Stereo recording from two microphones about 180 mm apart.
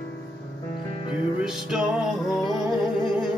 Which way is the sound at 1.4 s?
5° right (ahead or behind).